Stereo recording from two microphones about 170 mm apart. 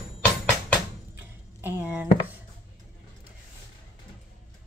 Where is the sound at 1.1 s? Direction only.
15° right (ahead or behind).